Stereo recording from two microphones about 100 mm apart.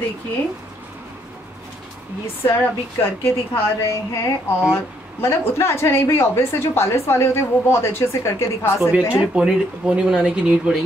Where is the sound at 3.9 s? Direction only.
30° left (ahead or behind).